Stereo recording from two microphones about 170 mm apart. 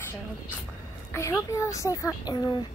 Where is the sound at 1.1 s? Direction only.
15° left (ahead or behind).